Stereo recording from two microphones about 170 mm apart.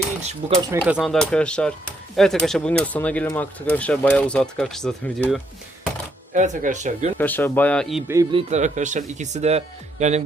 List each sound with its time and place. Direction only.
0.7 s speech: 10° right (ahead or behind); by 5.4 s 5° left (ahead or behind)
6.3 s speech: 45° right (ahead or behind)
7.2 s speech: 10° left (ahead or behind)
8.0 s speech: 20° right (ahead or behind)
8.3 s speech: 35° right (ahead or behind)